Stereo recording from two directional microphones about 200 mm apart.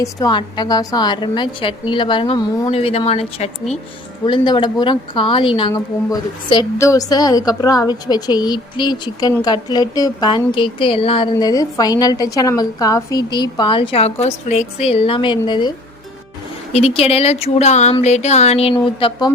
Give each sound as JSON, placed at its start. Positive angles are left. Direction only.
{"t": 0.0, "sound": "a woman's voice", "side_deg": 20}
{"t": 16.7, "sound": "speech", "side_deg": 30}